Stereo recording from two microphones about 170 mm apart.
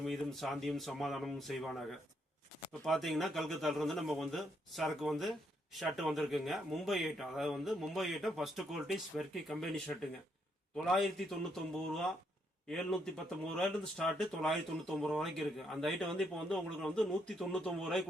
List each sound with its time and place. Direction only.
0.0 s a man's voice: centre (ahead or behind)